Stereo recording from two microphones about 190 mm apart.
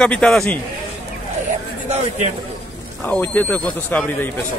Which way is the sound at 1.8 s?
35° right (ahead or behind).